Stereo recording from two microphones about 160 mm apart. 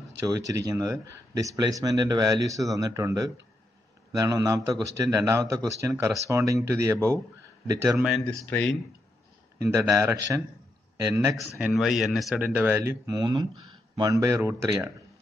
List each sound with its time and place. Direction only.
0.2 s speech: 20° right (ahead or behind)
8.5 s speech: 10° left (ahead or behind)
9.6 s speech: 20° right (ahead or behind)
11.5 s speech: 5° right (ahead or behind)